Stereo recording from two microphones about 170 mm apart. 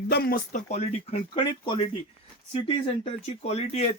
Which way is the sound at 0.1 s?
65° left (ahead or behind).